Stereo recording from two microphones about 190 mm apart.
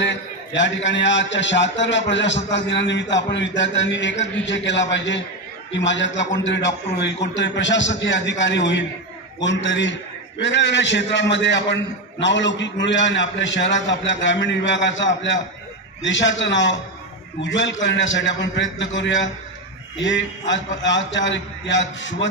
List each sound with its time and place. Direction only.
0.0 s a man's voice: 70° left (ahead or behind)